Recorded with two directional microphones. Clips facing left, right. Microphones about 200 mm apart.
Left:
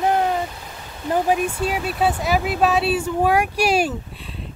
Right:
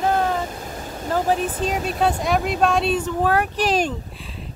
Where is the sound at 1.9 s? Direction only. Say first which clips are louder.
Even; 5° left (ahead or behind).